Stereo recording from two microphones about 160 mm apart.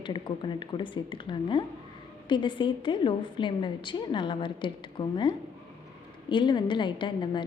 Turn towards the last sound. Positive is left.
turn(degrees=30)  # may be behind; listen again after turning